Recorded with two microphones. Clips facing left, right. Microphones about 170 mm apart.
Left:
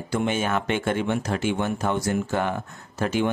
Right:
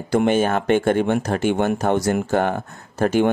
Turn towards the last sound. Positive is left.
turn(degrees=-55)  # may be behind; listen again after turning